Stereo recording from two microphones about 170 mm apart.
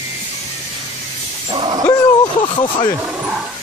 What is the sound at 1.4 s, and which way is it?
Dog, 30° right (ahead or behind).